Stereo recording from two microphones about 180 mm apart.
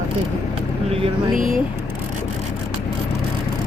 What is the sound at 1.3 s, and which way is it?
Speech, 50° right (ahead or behind).